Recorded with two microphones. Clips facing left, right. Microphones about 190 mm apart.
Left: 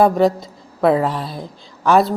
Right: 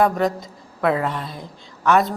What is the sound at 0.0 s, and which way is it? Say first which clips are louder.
A woman's voice: left 5 dB; 30° left (ahead or behind).